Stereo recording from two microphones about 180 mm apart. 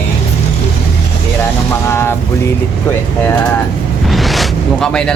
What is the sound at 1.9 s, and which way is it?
Speech, 15° left (ahead or behind).